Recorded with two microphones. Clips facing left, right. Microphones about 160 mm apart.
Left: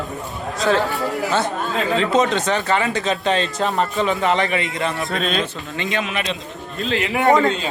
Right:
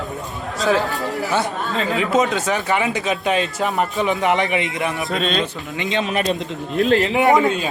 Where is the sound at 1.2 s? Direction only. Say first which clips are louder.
Even; 20° left (ahead or behind).